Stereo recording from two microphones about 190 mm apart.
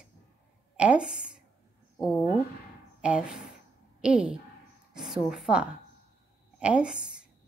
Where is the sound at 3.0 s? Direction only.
5° right (ahead or behind).